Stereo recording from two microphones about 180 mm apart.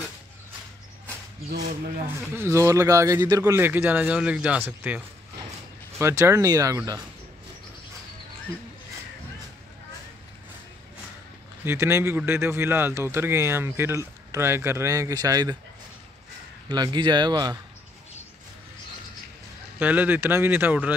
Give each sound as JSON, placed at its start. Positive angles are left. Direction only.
{"t": 2.3, "sound": "a man's voice", "side_deg": -15}
{"t": 11.6, "sound": "a man's voice", "side_deg": -15}
{"t": 16.6, "sound": "speech", "side_deg": -25}
{"t": 19.8, "sound": "a man's voice", "side_deg": -10}